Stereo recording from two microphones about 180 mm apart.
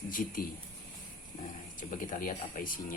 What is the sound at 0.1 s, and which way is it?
Speech, 50° left (ahead or behind).